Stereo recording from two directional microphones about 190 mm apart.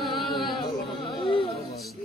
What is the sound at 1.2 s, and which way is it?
Music, 25° left (ahead or behind).